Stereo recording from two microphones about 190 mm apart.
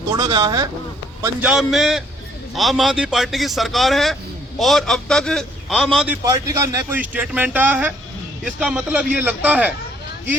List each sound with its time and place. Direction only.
0.1 s speech: 25° right (ahead or behind)
1.4 s a man's voice: 5° right (ahead or behind)
6.2 s a man's voice: 20° right (ahead or behind)